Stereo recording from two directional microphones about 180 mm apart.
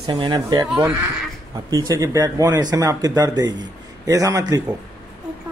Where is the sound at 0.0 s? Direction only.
25° right (ahead or behind).